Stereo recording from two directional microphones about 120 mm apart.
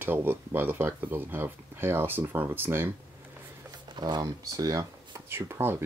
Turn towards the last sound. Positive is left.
turn(degrees=-20)  # may be behind; listen again after turning